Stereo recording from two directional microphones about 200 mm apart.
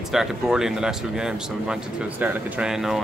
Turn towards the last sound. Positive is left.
turn(degrees=0)  # may be behind; listen again after turning